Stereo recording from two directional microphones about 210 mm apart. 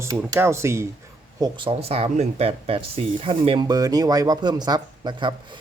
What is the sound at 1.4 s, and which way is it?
Speech, 25° right (ahead or behind).